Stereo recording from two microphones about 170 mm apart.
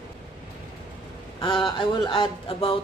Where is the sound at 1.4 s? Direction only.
30° left (ahead or behind).